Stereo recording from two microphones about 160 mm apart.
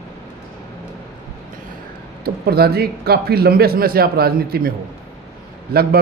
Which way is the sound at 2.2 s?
80° right.